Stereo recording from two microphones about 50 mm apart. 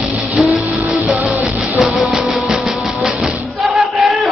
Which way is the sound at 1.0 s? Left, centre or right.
Centre.